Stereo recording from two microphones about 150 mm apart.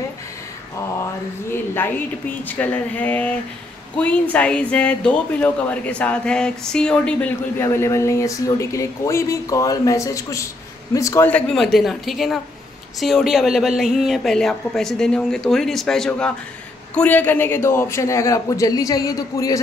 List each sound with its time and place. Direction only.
1.5 s speech: 15° left (ahead or behind)
11.3 s a man's voice: 5° left (ahead or behind); by 19.6 s 20° left (ahead or behind)